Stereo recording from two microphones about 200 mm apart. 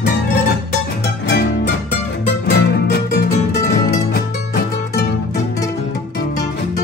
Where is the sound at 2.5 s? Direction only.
55° left (ahead or behind).